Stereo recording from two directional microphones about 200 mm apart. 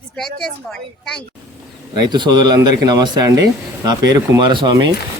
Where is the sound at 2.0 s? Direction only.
20° right (ahead or behind).